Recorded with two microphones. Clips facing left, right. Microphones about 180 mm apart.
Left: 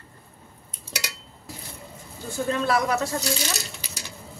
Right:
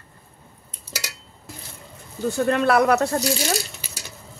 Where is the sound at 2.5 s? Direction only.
65° right (ahead or behind).